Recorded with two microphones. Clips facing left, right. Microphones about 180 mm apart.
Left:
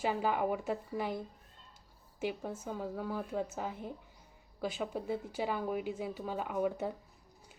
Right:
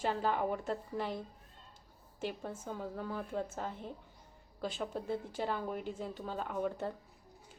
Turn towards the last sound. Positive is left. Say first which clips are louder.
# left 3 dB
turn(degrees=10)  # may be behind; listen again after turning